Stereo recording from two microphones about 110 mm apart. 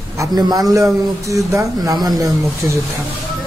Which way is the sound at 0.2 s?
40° right (ahead or behind).